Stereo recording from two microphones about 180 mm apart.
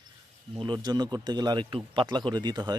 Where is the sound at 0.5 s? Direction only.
25° right (ahead or behind).